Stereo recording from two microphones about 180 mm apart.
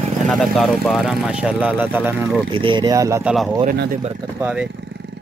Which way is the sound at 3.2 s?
5° right (ahead or behind).